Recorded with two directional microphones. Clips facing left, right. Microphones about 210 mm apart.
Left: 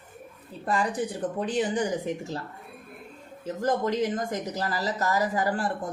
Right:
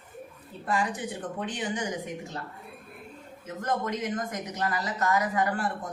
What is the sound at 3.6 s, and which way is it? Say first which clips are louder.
Speech: left 5 dB; 30° left (ahead or behind).